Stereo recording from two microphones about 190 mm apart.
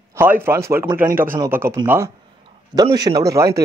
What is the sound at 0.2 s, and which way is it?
A man's voice, 10° right (ahead or behind).